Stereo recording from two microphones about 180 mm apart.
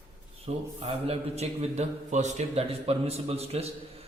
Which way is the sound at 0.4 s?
35° right (ahead or behind).